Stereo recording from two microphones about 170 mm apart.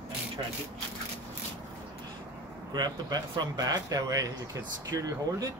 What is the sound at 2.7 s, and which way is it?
Speech, 25° right (ahead or behind).